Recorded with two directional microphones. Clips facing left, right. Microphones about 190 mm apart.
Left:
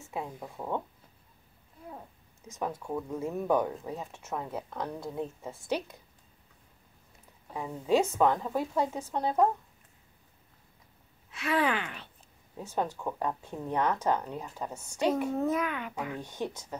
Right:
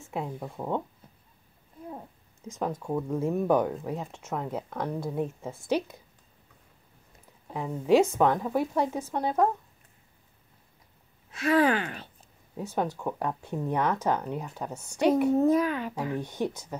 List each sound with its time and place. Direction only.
0.1 s speech: 15° right (ahead or behind)
2.6 s speech: 15° right (ahead or behind)
7.6 s speech: 10° right (ahead or behind)
11.3 s speech: 40° right (ahead or behind)
12.5 s speech: 10° right (ahead or behind)
15.3 s speech: 35° right (ahead or behind)
16.2 s speech: 15° right (ahead or behind)